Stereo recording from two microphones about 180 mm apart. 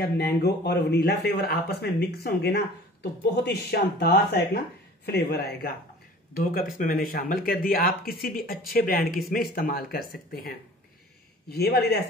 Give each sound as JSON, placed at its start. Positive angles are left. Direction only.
{"t": 0.0, "sound": "speech", "side_deg": 65}
{"t": 11.5, "sound": "speech", "side_deg": 60}